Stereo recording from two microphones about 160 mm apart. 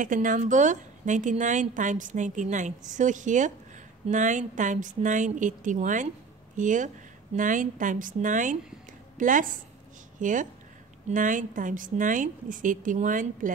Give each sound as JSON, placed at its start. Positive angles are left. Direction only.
{"t": 0.0, "sound": "a woman's voice", "side_deg": -55}